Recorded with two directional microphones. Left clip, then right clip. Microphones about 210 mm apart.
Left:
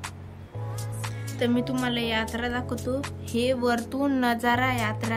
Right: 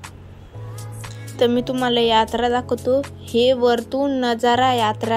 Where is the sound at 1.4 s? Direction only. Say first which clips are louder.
Right 8 dB; 15° right (ahead or behind).